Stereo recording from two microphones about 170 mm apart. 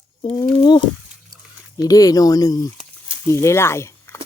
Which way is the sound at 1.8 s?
20° left (ahead or behind).